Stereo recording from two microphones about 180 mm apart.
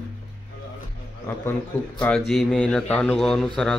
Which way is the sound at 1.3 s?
15° left (ahead or behind).